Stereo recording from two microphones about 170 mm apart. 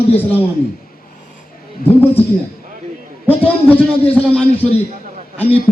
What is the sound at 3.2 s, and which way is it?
A man's voice, 10° left (ahead or behind).